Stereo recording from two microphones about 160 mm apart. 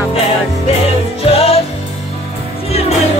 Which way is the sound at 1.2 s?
40° left (ahead or behind).